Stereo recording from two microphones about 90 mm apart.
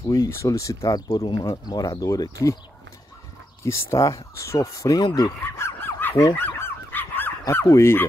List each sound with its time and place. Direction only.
0.0 s speech: 35° left (ahead or behind)
3.6 s speech: 30° left (ahead or behind)
5.4 s snicker: 25° left (ahead or behind)
6.3 s dog: 20° left (ahead or behind)
7.4 s speech: 35° left (ahead or behind)